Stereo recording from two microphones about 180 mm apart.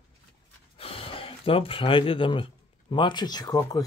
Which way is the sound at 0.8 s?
30° left (ahead or behind).